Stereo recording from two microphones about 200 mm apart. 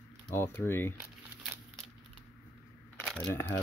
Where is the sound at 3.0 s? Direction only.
10° left (ahead or behind).